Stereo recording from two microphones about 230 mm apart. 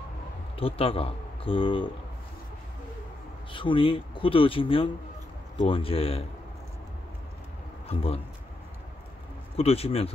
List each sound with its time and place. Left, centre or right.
0.6 s speech: left
3.5 s speech: left
9.6 s speech: left